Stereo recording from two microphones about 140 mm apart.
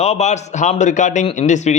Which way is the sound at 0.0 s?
50° left (ahead or behind).